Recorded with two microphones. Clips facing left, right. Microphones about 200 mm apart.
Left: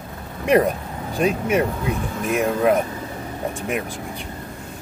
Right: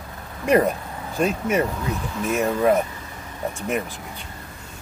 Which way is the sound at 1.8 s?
55° left (ahead or behind).